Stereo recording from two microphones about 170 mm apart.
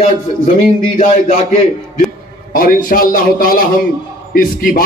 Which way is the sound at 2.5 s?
55° left (ahead or behind).